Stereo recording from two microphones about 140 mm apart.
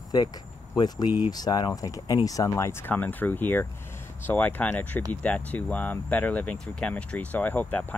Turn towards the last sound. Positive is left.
turn(degrees=10)  # may be behind; listen again after turning